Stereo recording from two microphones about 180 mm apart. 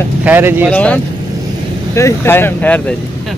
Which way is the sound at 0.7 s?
10° left (ahead or behind).